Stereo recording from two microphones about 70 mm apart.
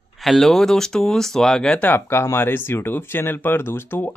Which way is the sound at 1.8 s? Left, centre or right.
Left.